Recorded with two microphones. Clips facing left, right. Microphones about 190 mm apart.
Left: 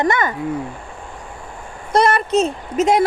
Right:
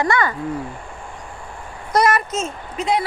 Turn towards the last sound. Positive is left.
turn(degrees=45)  # may be behind; listen again after turning